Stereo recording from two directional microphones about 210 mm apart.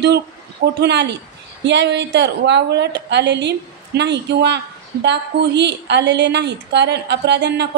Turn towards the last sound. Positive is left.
turn(degrees=-55)  # may be behind; listen again after turning